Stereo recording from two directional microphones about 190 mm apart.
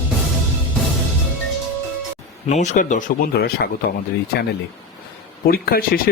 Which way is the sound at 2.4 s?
40° left (ahead or behind).